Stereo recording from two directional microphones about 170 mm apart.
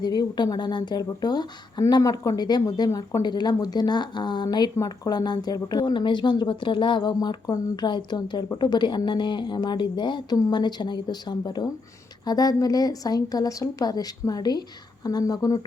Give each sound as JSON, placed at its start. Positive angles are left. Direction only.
{"t": 0.0, "sound": "speech", "side_deg": 25}